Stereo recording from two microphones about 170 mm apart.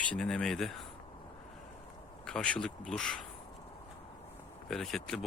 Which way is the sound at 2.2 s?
5° left (ahead or behind).